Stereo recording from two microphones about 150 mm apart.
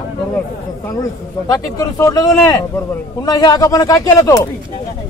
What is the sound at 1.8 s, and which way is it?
Speech, 20° left (ahead or behind).